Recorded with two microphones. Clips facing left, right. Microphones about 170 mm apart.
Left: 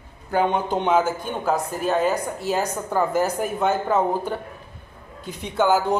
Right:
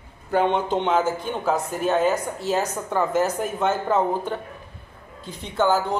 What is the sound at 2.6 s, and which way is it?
Speech, 10° left (ahead or behind).